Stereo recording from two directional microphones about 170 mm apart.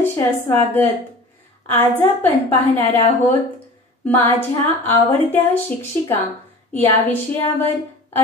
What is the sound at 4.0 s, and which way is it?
A woman's voice, 10° left (ahead or behind).